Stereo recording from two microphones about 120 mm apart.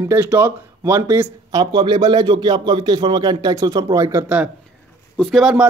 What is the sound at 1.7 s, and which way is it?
Speech, 40° right (ahead or behind).